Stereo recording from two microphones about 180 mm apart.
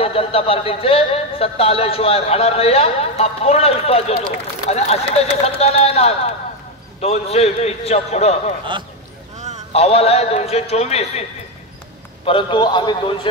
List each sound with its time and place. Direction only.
0.0 s speech: 30° left (ahead or behind)
9.7 s speech: 35° left (ahead or behind)
12.3 s a man's voice: 25° left (ahead or behind)